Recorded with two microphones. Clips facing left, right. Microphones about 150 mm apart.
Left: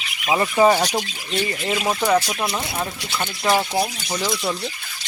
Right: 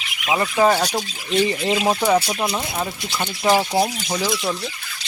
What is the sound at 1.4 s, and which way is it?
Speech, 20° right (ahead or behind).